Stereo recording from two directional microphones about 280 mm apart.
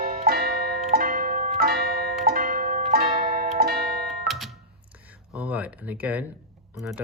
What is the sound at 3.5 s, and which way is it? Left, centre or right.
Music, right.